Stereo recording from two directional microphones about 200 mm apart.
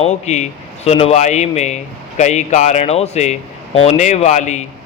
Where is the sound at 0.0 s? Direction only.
35° left (ahead or behind).